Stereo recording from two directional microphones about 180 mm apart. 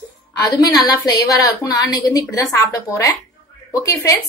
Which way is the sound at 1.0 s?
20° left (ahead or behind).